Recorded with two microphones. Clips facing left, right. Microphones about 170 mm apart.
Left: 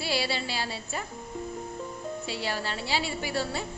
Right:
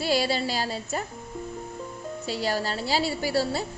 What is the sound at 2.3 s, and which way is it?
A woman's voice, 40° right (ahead or behind).